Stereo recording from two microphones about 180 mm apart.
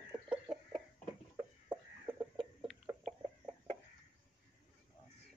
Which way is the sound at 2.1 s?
30° right (ahead or behind).